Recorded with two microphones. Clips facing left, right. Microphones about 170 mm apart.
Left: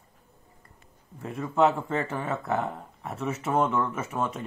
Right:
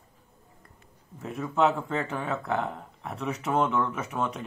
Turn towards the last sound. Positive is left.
turn(degrees=0)  # may be behind; listen again after turning